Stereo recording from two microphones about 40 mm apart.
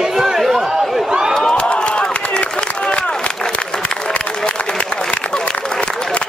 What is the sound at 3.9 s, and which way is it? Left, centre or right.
Applause, left.